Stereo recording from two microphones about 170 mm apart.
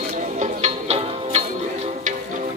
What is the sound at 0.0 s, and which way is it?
Music, 45° right (ahead or behind).